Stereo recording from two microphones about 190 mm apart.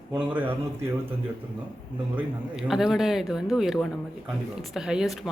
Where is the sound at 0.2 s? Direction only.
10° right (ahead or behind).